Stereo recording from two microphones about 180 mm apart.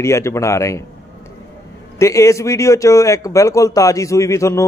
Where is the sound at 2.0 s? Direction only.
15° left (ahead or behind).